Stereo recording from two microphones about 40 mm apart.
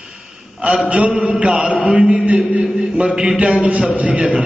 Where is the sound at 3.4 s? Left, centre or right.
Right.